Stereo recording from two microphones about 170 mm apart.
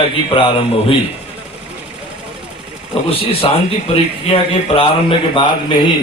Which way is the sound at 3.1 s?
35° left (ahead or behind).